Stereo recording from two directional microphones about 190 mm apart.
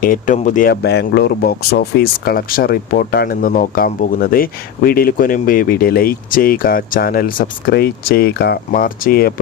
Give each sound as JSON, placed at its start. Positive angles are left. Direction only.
{"t": 0.0, "sound": "speech", "side_deg": 45}
{"t": 0.7, "sound": "speech", "side_deg": 60}